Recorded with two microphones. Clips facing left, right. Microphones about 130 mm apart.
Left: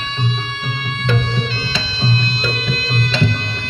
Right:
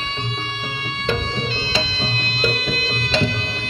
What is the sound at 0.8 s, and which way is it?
Music, 25° right (ahead or behind).